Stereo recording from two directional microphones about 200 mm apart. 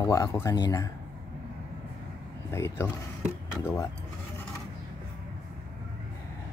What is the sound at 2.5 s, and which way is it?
Speech, 15° left (ahead or behind).